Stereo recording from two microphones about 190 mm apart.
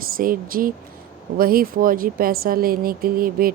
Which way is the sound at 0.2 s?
50° right (ahead or behind).